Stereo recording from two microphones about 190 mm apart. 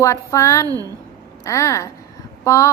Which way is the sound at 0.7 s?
20° right (ahead or behind).